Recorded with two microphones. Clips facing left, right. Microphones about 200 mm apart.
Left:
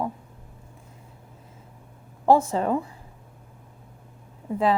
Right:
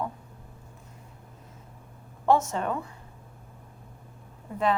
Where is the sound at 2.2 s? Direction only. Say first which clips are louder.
Left 4 dB; 30° left (ahead or behind).